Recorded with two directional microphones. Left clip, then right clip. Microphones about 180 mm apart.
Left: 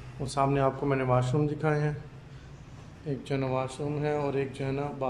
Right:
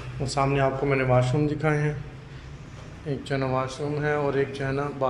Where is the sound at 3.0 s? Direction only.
15° left (ahead or behind).